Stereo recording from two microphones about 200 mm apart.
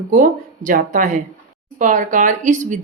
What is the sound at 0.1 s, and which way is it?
Speech, 40° right (ahead or behind).